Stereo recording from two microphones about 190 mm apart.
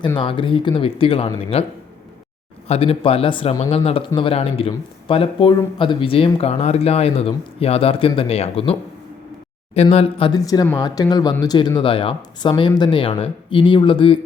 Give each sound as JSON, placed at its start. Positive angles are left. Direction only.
{"t": 0.2, "sound": "speech", "side_deg": 25}
{"t": 2.6, "sound": "speech", "side_deg": 30}